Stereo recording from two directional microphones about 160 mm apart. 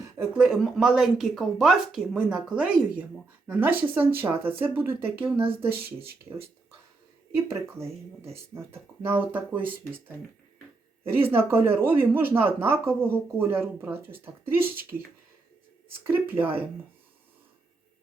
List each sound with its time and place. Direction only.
0.2 s speech: centre (ahead or behind)
7.3 s speech: 15° right (ahead or behind)
11.2 s speech: 15° right (ahead or behind)
16.0 s speech: 15° right (ahead or behind)